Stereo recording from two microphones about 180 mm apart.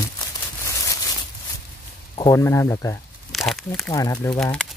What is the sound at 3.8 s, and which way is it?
Speech, 20° left (ahead or behind).